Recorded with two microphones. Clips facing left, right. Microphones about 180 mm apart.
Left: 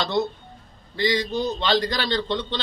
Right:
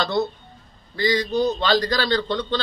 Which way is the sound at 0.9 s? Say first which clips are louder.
Right 2 dB; 25° left (ahead or behind).